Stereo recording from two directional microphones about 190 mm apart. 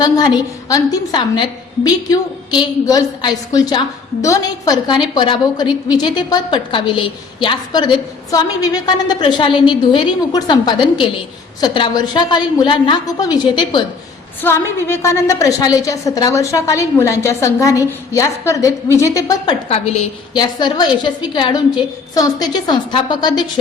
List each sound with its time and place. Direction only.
0.0 s a woman's voice: 20° left (ahead or behind)
19.6 s a woman's voice: 30° left (ahead or behind)
20.4 s a woman's voice: 20° left (ahead or behind)